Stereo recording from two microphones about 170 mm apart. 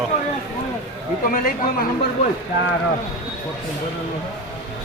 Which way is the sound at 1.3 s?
60° left (ahead or behind).